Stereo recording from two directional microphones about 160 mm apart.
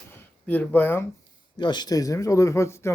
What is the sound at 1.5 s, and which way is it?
Speech, 25° left (ahead or behind).